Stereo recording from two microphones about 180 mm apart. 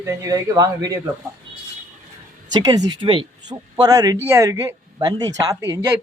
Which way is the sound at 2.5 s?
20° right (ahead or behind).